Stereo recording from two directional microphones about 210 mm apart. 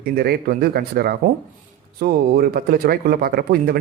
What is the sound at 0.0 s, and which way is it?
Speech, 45° right (ahead or behind).